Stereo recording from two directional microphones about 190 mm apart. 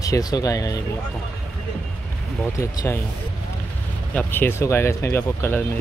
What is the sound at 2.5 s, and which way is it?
Speech, 15° left (ahead or behind).